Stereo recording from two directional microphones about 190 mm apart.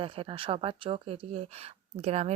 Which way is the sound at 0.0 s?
30° right (ahead or behind).